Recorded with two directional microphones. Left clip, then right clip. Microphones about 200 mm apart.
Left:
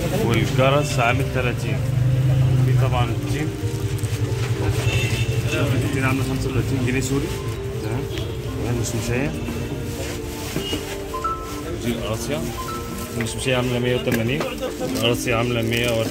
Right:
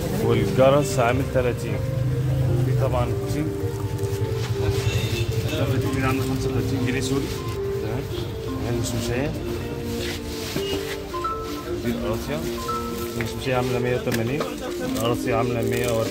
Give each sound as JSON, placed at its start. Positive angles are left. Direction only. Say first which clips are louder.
{"t": 0.3, "sound": "speech", "louder": "right 3 dB", "side_deg": -55}
{"t": 15.0, "sound": "speech", "louder": "left 2 dB", "side_deg": -15}